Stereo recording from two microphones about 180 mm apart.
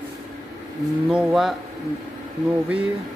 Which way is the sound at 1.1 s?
5° right (ahead or behind).